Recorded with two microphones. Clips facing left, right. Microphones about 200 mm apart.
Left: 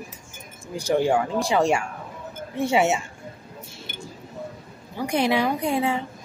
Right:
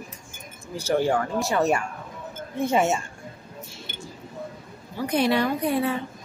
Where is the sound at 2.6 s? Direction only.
75° left (ahead or behind).